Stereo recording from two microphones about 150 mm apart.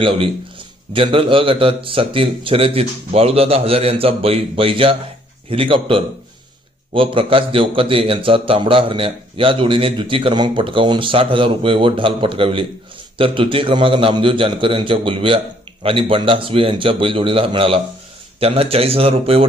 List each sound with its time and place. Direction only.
0.0 s a man's voice: 35° right (ahead or behind)